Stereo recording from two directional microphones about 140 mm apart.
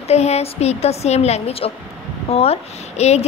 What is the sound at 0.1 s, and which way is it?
A woman's voice, 50° left (ahead or behind).